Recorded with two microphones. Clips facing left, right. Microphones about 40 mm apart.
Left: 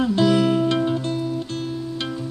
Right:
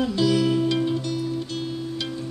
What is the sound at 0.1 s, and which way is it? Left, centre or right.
Music, left.